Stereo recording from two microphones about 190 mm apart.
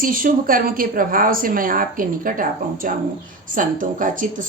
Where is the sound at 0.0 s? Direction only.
45° right (ahead or behind).